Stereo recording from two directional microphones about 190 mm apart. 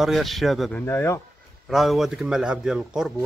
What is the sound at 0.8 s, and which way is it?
Speech, 10° left (ahead or behind).